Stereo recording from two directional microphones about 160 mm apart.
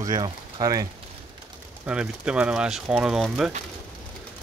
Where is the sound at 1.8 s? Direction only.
5° right (ahead or behind).